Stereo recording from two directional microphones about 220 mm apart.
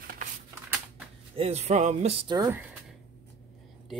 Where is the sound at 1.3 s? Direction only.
25° right (ahead or behind).